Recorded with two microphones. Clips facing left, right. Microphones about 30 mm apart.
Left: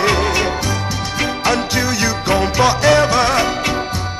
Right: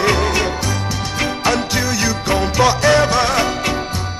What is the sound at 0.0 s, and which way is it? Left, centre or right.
Music, centre.